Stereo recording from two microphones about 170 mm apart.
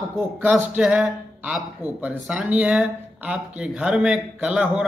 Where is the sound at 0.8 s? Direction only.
5° right (ahead or behind).